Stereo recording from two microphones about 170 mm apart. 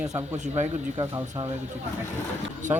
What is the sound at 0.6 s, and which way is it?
Speech, 20° right (ahead or behind).